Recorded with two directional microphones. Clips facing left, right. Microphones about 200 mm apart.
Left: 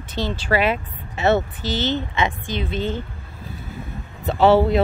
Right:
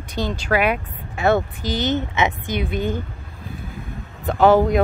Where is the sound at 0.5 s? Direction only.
5° left (ahead or behind).